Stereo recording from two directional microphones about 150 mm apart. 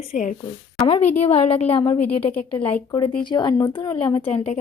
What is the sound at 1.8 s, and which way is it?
A woman's voice, 25° left (ahead or behind).